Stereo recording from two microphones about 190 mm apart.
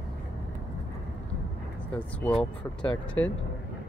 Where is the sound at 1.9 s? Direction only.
5° left (ahead or behind).